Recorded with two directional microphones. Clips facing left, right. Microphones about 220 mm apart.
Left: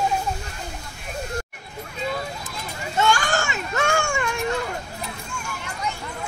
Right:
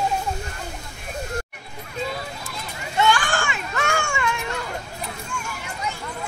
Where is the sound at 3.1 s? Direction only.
40° left (ahead or behind).